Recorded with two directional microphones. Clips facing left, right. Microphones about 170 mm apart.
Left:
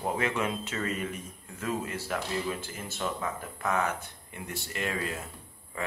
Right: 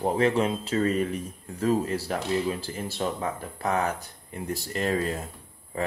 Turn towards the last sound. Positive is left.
turn(degrees=-35)  # may be behind; listen again after turning